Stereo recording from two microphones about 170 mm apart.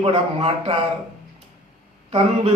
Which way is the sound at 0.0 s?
30° right (ahead or behind).